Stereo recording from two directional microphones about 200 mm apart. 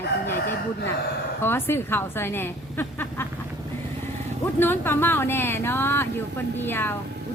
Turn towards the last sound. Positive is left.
turn(degrees=10)  # may be behind; listen again after turning